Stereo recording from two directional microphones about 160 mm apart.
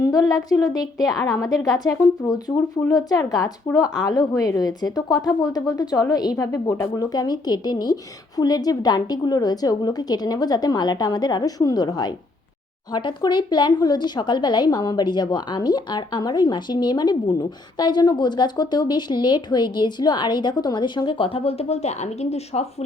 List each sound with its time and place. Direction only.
0.0 s a woman's voice: 25° left (ahead or behind); by 22.6 s 40° left (ahead or behind)